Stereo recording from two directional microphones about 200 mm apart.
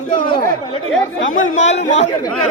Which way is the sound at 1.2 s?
75° left (ahead or behind).